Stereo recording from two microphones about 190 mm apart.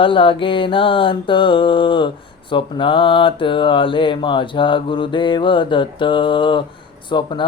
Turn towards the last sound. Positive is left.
turn(degrees=25)  # may be behind; listen again after turning